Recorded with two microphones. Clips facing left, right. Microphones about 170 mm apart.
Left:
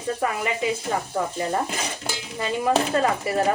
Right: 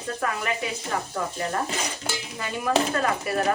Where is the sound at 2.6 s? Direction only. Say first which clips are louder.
Left 2 dB; 25° left (ahead or behind).